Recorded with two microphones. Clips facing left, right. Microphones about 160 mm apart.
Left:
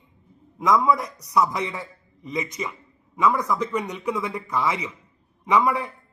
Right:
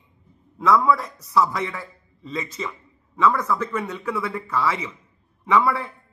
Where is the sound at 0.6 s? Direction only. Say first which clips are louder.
Right 1 dB; 15° left (ahead or behind).